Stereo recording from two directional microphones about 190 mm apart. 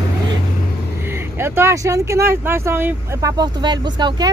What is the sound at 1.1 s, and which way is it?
Speech, 15° right (ahead or behind).